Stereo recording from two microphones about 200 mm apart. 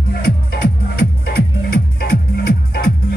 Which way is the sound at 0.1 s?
50° left (ahead or behind).